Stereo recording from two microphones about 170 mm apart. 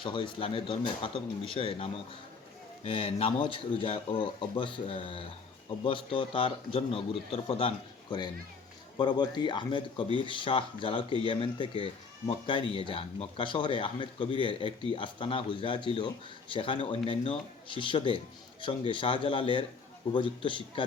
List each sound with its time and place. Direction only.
0.0 s speech: 30° left (ahead or behind)
9.0 s speech: 25° left (ahead or behind)